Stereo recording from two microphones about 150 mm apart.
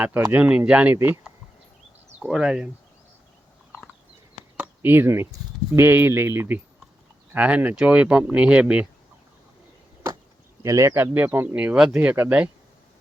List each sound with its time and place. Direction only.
0.3 s speech: 10° right (ahead or behind)
2.2 s speech: 5° right (ahead or behind)
4.5 s speech: 15° right (ahead or behind)
10.6 s speech: 20° right (ahead or behind)